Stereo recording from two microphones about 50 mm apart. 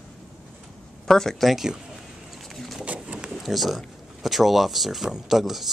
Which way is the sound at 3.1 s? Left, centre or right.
Centre.